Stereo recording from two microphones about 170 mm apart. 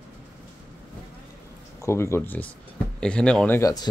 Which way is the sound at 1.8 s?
15° left (ahead or behind).